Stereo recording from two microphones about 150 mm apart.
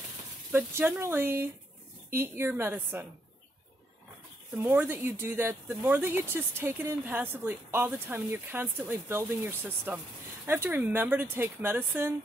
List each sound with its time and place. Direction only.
0.5 s speech: 15° right (ahead or behind)
4.6 s speech: 15° right (ahead or behind)